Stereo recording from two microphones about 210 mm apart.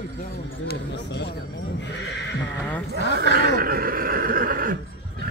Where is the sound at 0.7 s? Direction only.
55° left (ahead or behind).